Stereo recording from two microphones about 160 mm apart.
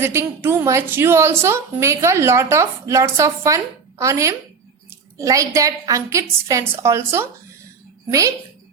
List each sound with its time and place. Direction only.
0.0 s a woman's voice: 15° right (ahead or behind)